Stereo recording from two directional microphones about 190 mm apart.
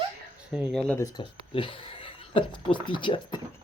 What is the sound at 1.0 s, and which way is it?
Speech, 25° left (ahead or behind).